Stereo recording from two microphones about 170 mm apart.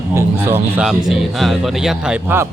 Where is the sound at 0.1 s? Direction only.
15° right (ahead or behind).